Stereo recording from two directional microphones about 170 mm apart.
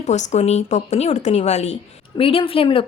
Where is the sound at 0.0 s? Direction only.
45° left (ahead or behind).